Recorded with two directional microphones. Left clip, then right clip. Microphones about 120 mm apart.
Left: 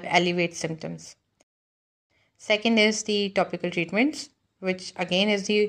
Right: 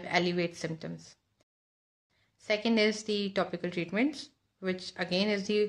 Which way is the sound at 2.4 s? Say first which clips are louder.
Left 6 dB; 30° left (ahead or behind).